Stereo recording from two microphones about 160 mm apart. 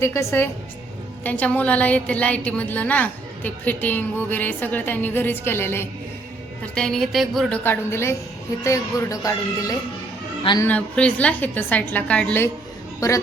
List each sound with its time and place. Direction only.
0.0 s a woman's voice: 15° left (ahead or behind)
6.7 s a sound: 5° left (ahead or behind)
7.6 s a woman's voice: 15° left (ahead or behind)
10.6 s a woman's voice: 10° left (ahead or behind)
13.0 s speech: 20° left (ahead or behind)